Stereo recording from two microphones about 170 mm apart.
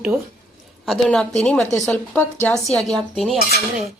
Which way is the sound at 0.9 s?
5° left (ahead or behind).